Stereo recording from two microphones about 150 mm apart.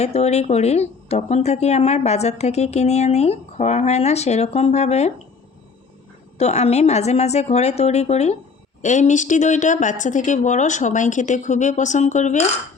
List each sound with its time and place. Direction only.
0.0 s speech: 45° left (ahead or behind)
6.4 s speech: 45° left (ahead or behind)